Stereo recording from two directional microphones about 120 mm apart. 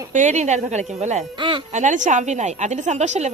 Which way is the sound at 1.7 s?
80° right.